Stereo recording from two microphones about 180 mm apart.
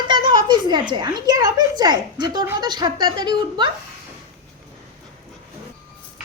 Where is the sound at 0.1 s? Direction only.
25° right (ahead or behind).